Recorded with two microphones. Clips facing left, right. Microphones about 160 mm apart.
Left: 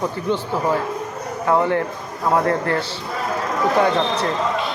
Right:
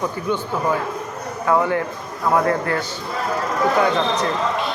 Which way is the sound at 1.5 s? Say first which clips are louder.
Left 1 dB; 30° left (ahead or behind).